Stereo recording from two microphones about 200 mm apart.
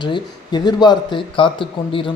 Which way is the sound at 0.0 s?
20° left (ahead or behind).